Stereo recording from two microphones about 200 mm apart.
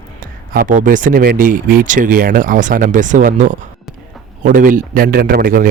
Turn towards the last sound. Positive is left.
turn(degrees=-45)  # may be behind; listen again after turning